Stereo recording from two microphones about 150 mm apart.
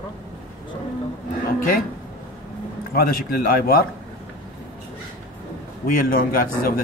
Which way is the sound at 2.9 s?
80° left.